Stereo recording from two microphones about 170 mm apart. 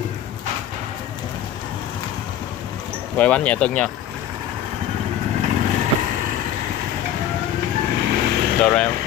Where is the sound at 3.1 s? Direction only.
10° left (ahead or behind).